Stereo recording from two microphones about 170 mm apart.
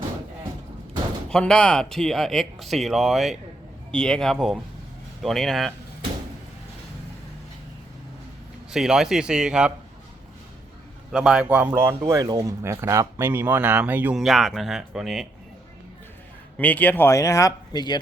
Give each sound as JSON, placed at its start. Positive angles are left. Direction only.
{"t": 1.3, "sound": "speech", "side_deg": 5}
{"t": 8.7, "sound": "speech", "side_deg": -5}
{"t": 11.1, "sound": "speech", "side_deg": 0}
{"t": 16.6, "sound": "speech", "side_deg": 10}